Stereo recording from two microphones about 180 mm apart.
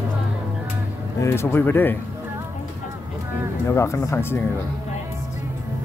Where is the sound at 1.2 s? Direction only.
15° left (ahead or behind).